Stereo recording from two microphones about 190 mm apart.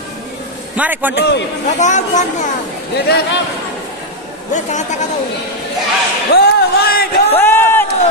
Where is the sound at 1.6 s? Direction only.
40° left (ahead or behind).